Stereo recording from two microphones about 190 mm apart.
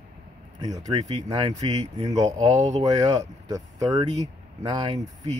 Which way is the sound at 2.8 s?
20° right (ahead or behind).